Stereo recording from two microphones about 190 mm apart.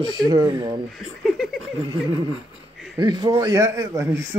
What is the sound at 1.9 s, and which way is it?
Speech, 20° right (ahead or behind).